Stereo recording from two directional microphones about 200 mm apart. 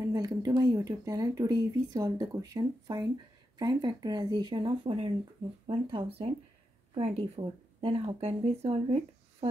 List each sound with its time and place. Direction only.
0.0 s speech: 20° right (ahead or behind)